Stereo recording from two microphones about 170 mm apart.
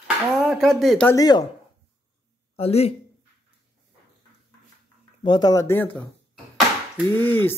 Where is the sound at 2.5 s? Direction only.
35° left (ahead or behind).